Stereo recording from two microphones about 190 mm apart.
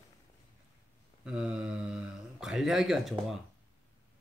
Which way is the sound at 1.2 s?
5° right (ahead or behind).